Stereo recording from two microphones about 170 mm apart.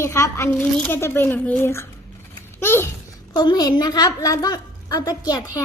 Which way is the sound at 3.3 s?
25° left (ahead or behind).